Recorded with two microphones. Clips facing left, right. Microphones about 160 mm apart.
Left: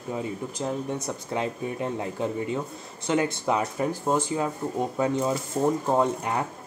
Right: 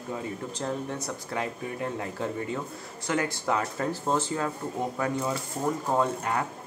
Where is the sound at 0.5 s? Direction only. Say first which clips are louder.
Left 3 dB; 15° left (ahead or behind).